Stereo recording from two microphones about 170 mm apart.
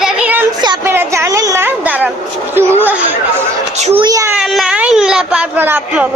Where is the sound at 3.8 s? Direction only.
35° right (ahead or behind).